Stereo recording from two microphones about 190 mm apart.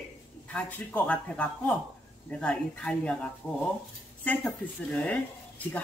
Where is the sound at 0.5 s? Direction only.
5° left (ahead or behind).